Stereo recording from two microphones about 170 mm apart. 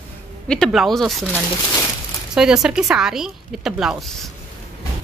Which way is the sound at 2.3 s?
5° right (ahead or behind).